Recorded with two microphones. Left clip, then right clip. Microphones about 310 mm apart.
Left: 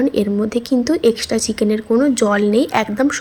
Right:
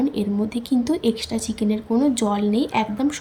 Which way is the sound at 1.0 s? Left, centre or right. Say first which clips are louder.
Left 8 dB; centre.